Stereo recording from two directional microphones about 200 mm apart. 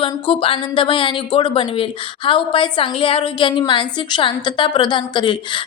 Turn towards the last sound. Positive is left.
turn(degrees=25)  # may be behind; listen again after turning